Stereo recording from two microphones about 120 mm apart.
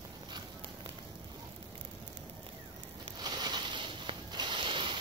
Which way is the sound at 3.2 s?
35° right (ahead or behind).